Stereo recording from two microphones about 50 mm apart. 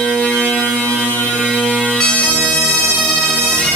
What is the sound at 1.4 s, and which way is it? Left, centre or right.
Bagpipes, centre.